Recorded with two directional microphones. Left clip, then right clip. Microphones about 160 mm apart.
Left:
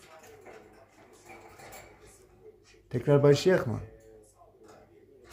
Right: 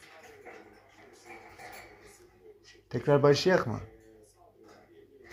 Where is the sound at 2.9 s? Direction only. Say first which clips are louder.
Left 1 dB; 20° left (ahead or behind).